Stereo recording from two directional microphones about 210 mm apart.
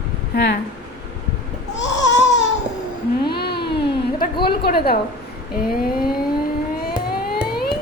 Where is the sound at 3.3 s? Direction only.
50° left (ahead or behind).